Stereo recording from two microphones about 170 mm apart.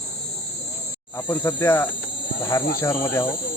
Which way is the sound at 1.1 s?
15° left (ahead or behind).